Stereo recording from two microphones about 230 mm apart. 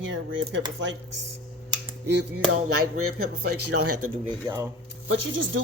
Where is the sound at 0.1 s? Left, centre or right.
Right.